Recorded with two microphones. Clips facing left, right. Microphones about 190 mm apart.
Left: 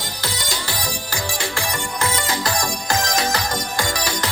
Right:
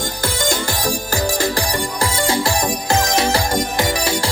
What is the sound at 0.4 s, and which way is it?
Music, 50° right (ahead or behind).